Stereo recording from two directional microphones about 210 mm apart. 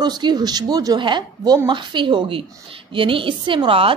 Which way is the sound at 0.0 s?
20° right (ahead or behind).